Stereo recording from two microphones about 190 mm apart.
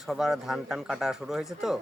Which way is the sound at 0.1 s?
Centre (ahead or behind).